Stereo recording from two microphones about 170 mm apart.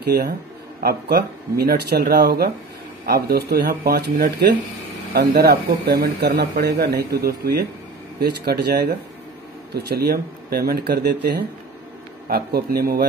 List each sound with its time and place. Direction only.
0.0 s speech: 75° right (ahead or behind)
12.3 s a man's voice: 65° right (ahead or behind)